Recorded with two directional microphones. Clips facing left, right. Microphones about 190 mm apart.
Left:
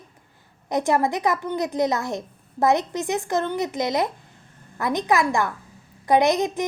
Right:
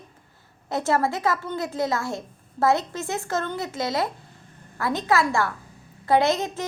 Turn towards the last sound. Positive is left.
turn(degrees=15)  # may be behind; listen again after turning